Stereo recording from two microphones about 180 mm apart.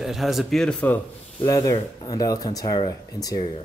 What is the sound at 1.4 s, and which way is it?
Speech, 20° left (ahead or behind).